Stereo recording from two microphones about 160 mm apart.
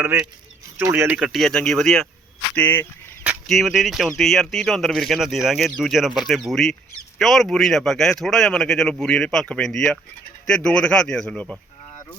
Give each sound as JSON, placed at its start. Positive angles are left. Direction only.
{"t": 0.0, "sound": "speech", "side_deg": -15}
{"t": 3.4, "sound": "speech", "side_deg": 0}